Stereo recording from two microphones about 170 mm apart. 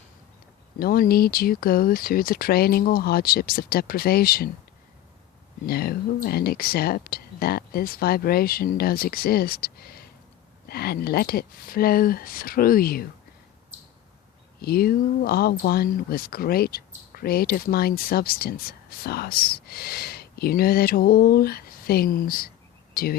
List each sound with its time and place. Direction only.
0.8 s speech: 60° left (ahead or behind)
5.6 s speech: 65° left (ahead or behind)
14.6 s speech: 60° left (ahead or behind)